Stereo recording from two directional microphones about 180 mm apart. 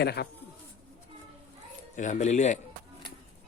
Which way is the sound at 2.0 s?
40° left (ahead or behind).